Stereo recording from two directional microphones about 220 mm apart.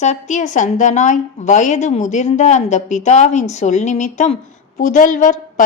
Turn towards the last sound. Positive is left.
turn(degrees=35)  # may be behind; listen again after turning